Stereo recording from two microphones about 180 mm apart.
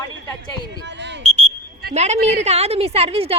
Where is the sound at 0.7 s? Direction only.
75° right (ahead or behind).